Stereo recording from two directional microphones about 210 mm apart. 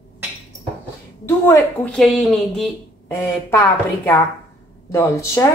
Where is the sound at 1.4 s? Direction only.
10° left (ahead or behind).